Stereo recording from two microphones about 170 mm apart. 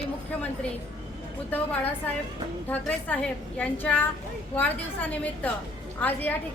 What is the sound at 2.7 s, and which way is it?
A woman's voice, 10° left (ahead or behind).